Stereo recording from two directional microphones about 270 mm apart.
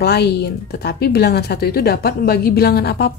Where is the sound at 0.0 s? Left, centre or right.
Left.